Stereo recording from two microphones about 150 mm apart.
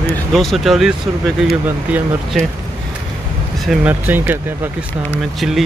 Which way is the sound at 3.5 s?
Centre (ahead or behind).